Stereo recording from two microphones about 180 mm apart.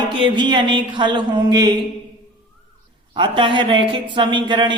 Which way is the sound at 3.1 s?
25° right (ahead or behind).